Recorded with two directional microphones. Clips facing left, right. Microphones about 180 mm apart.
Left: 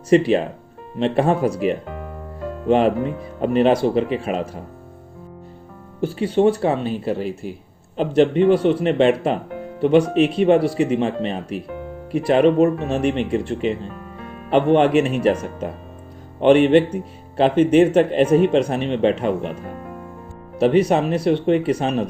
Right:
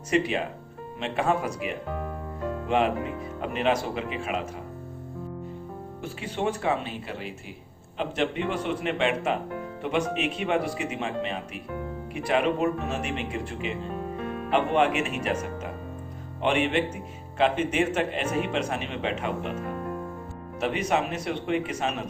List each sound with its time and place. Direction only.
0.1 s speech: 35° left (ahead or behind)
6.0 s speech: 35° left (ahead or behind)
14.5 s speech: 35° left (ahead or behind)
16.4 s speech: 35° left (ahead or behind)
20.6 s speech: 35° left (ahead or behind)